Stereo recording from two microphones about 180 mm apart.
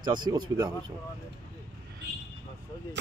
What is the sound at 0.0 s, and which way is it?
Speech, 25° right (ahead or behind).